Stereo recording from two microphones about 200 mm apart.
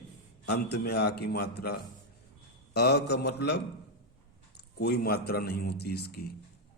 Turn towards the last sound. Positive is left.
turn(degrees=50)  # may be behind; listen again after turning